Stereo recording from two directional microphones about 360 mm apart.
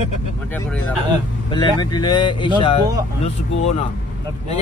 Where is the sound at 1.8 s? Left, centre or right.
Centre.